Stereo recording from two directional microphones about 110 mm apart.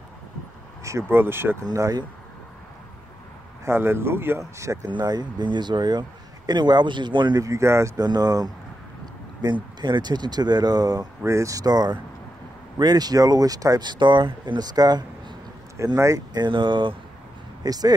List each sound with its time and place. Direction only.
1.1 s speech: 20° right (ahead or behind)
1.7 s speech: 35° right (ahead or behind)
3.6 s speech: 20° right (ahead or behind)
4.8 s a man's voice: 40° right (ahead or behind)
7.3 s speech: 30° right (ahead or behind)
8.1 s a man's voice: 35° right (ahead or behind)
17.6 s speech: 35° right (ahead or behind)